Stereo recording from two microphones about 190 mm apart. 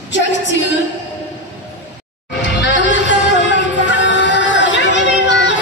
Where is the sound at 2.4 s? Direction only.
70° left (ahead or behind).